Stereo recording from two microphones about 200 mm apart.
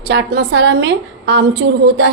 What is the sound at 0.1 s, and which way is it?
A woman's voice, 60° right (ahead or behind).